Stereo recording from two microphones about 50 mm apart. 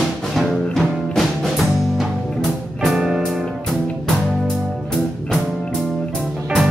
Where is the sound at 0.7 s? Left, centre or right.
Centre.